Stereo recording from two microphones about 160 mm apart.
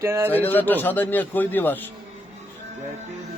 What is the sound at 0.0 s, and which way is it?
Speech, 15° right (ahead or behind).